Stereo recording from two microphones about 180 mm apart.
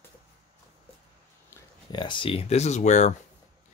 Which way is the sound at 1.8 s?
25° left (ahead or behind).